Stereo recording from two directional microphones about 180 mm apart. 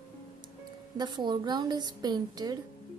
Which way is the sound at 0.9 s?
25° right (ahead or behind).